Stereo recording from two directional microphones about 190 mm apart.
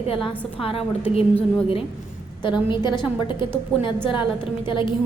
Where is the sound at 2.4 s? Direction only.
25° left (ahead or behind).